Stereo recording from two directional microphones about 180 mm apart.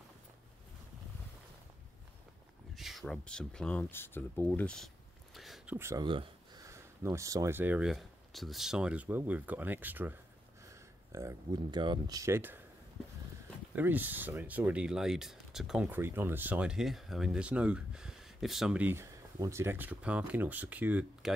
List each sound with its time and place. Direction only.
2.7 s speech: centre (ahead or behind)
5.8 s speech: 15° right (ahead or behind)
13.7 s speech: 10° right (ahead or behind)